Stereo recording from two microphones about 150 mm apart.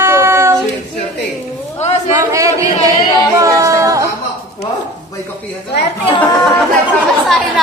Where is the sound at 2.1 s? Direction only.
20° right (ahead or behind).